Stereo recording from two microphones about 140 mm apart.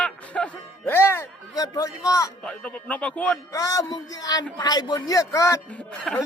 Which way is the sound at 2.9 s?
10° left (ahead or behind).